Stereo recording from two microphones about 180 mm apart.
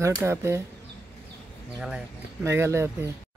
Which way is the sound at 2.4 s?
15° right (ahead or behind).